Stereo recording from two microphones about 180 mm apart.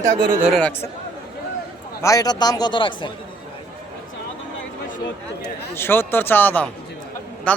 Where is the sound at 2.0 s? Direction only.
20° left (ahead or behind).